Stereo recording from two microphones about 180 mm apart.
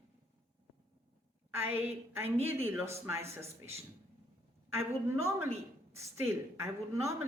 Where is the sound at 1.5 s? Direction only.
10° right (ahead or behind).